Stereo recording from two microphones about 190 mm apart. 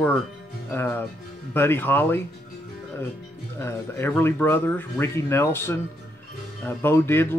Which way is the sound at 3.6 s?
10° left (ahead or behind).